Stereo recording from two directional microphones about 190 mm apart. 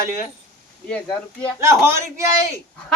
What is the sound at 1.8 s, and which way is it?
Speech, 15° right (ahead or behind).